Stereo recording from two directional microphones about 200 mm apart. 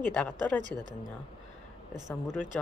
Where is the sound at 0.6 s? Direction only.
20° right (ahead or behind).